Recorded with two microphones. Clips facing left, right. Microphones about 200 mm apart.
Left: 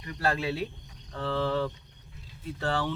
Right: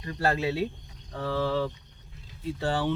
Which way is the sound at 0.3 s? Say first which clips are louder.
Right 2 dB; 20° right (ahead or behind).